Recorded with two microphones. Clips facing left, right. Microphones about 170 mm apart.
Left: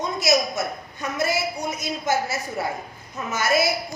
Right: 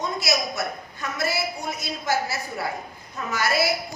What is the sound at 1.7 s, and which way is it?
A woman's voice, 20° left (ahead or behind).